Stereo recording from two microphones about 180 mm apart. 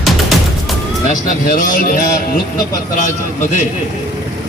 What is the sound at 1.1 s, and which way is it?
A man's voice, 45° left (ahead or behind).